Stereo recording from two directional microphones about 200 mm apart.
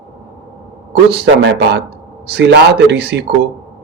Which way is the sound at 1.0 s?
55° right (ahead or behind).